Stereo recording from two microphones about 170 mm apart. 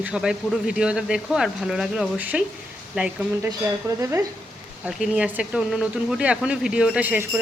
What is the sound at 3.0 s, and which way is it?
Jingle bell, 5° right (ahead or behind).